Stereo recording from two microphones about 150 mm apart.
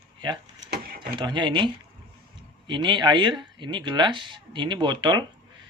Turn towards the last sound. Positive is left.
turn(degrees=-30)  # may be behind; listen again after turning